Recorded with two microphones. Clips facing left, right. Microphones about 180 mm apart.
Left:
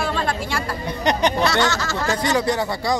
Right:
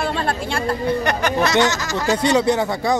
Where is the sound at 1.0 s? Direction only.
15° left (ahead or behind).